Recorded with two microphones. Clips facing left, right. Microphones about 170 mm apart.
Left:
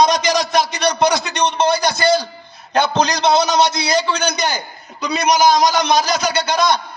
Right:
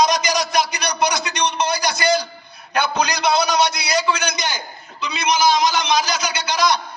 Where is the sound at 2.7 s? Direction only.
25° left (ahead or behind).